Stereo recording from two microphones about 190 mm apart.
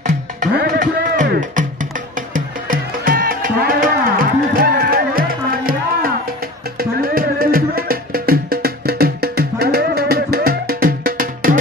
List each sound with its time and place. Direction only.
0.6 s music: 45° right (ahead or behind)